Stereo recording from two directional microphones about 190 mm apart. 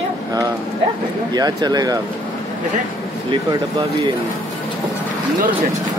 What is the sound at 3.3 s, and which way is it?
Speech, 25° right (ahead or behind).